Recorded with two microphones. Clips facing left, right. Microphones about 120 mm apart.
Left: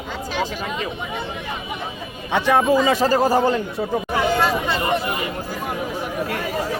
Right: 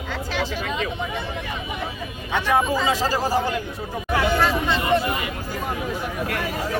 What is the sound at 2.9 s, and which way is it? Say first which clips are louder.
Speech: left 5 dB; 55° left (ahead or behind).